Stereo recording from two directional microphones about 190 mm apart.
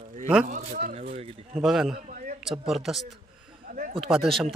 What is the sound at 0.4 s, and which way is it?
Speech, 40° right (ahead or behind).